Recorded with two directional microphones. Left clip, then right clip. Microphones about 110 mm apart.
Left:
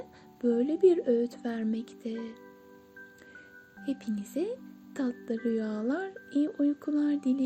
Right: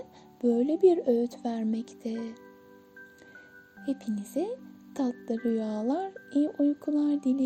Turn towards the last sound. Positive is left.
turn(degrees=-40)  # may be behind; listen again after turning